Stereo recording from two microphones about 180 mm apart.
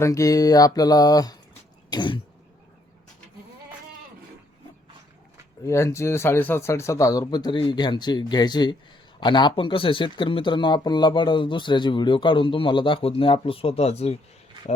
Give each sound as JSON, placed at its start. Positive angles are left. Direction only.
{"t": 0.0, "sound": "speech", "side_deg": 15}
{"t": 5.6, "sound": "speech", "side_deg": 15}